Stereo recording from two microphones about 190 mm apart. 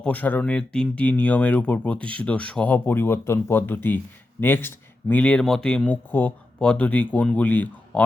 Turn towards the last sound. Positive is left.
turn(degrees=10)  # may be behind; listen again after turning